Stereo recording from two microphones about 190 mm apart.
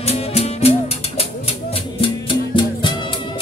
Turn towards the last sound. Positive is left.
turn(degrees=25)  # may be behind; listen again after turning